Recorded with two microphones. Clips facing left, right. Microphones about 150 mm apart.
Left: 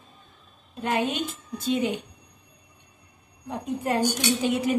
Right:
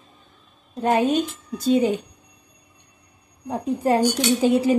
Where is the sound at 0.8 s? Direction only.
35° right (ahead or behind).